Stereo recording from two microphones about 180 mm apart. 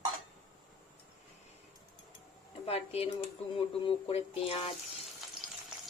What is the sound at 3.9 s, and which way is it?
Speech, 30° left (ahead or behind).